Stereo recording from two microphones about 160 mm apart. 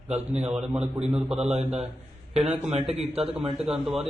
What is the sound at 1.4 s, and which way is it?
A man's voice, 45° right (ahead or behind).